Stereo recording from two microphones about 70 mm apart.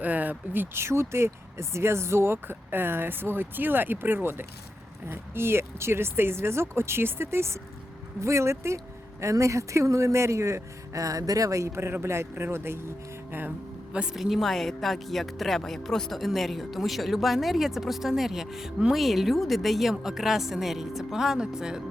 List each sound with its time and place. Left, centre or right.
0.0 s speech: right
13.9 s speech: centre